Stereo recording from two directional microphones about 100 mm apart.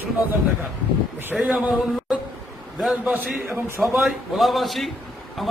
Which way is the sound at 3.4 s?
25° right (ahead or behind).